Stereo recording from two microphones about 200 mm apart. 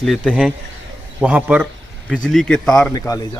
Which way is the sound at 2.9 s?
15° left (ahead or behind).